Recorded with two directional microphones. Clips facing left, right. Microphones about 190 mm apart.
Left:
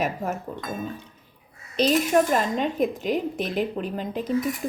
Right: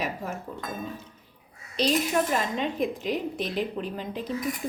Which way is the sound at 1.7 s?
45° left (ahead or behind).